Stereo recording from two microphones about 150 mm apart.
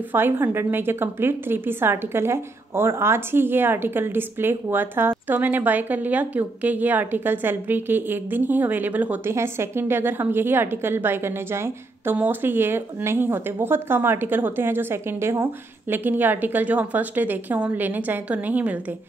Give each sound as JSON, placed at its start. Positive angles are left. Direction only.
{"t": 0.1, "sound": "a woman's voice", "side_deg": -15}